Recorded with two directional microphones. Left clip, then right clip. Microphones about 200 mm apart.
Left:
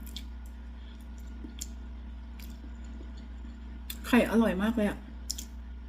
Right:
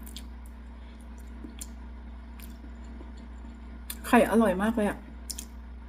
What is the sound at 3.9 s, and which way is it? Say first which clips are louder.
Speech: right 4 dB; 20° left (ahead or behind).